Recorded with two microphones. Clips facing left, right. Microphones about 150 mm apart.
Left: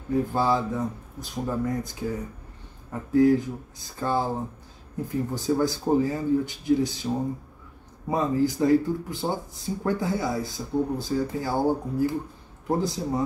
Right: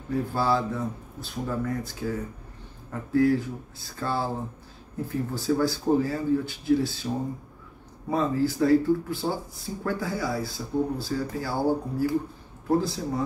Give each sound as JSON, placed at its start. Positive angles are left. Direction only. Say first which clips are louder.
{"t": 0.1, "sound": "speech", "louder": "left 2 dB", "side_deg": 20}
{"t": 8.1, "sound": "speech", "louder": "left 1 dB", "side_deg": 20}